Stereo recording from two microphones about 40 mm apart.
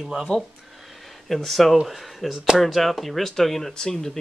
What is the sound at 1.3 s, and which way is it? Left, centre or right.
Speech, centre.